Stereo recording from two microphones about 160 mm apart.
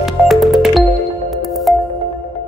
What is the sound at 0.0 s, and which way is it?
Music, centre (ahead or behind).